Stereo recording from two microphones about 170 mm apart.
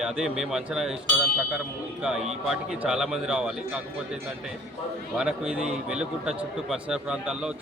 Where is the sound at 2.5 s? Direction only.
5° right (ahead or behind).